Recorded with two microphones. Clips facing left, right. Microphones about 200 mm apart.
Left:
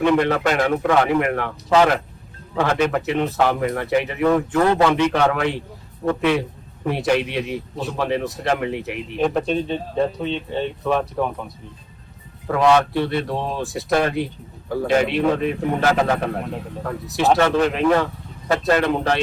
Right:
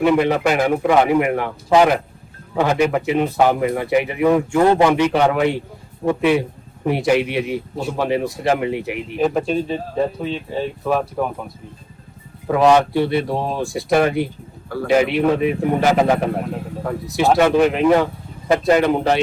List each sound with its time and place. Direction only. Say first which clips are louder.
0.0 s a man's voice: right 2 dB; 10° right (ahead or behind)
12.5 s a man's voice: right 3 dB; 15° right (ahead or behind)
17.3 s a man's voice: right 5 dB; 15° right (ahead or behind)